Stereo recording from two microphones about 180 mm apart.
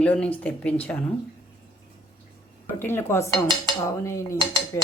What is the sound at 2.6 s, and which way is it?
A woman's voice, 10° left (ahead or behind).